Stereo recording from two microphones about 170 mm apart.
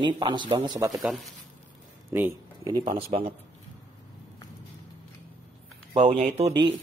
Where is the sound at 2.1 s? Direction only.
15° right (ahead or behind).